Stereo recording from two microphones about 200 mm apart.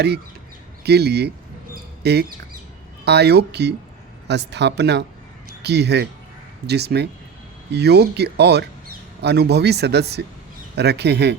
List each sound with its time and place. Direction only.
0.9 s speech: 55° right (ahead or behind)